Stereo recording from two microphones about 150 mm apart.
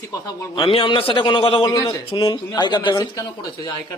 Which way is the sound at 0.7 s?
35° left (ahead or behind).